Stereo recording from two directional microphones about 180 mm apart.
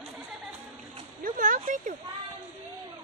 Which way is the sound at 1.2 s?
45° right (ahead or behind).